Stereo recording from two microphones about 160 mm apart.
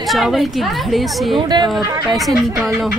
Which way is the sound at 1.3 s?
25° right (ahead or behind).